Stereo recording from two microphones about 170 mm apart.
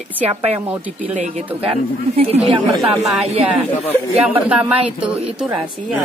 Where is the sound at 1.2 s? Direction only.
45° right (ahead or behind).